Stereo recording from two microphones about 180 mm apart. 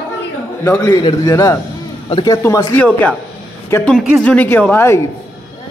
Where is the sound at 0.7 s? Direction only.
20° left (ahead or behind).